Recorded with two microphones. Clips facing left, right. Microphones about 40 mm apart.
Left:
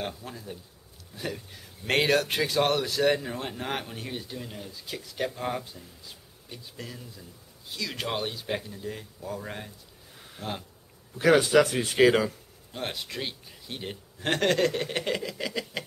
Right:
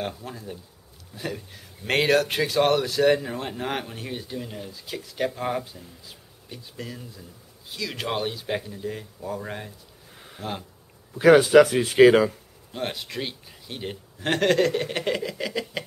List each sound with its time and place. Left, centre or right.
0.2 s speech: centre
10.1 s a sound: centre
11.1 s speech: centre
12.7 s speech: centre